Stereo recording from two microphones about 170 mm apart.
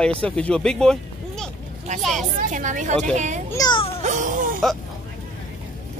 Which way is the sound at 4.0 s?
45° right (ahead or behind).